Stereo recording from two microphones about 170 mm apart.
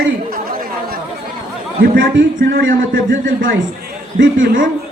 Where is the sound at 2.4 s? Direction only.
60° right (ahead or behind); by 3.0 s 80° right.